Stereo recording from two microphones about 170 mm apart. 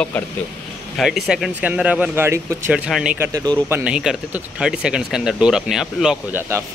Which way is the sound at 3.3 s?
20° right (ahead or behind).